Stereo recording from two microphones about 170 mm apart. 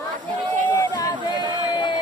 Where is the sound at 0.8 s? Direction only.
25° left (ahead or behind).